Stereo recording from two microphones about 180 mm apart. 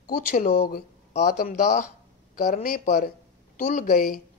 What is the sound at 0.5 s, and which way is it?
Speech, 60° left (ahead or behind).